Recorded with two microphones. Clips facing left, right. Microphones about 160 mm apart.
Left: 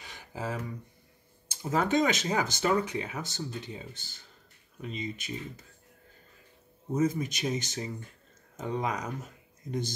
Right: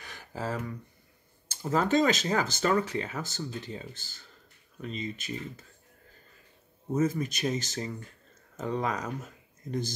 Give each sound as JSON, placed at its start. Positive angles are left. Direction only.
{"t": 0.0, "sound": "a sound", "side_deg": 15}
{"t": 1.5, "sound": "speech", "side_deg": 15}
{"t": 7.0, "sound": "speech", "side_deg": 20}